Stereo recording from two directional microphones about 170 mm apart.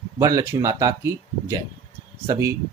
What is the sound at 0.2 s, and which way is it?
Speech, 20° right (ahead or behind).